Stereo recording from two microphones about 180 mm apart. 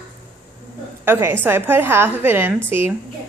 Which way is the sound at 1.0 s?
10° right (ahead or behind).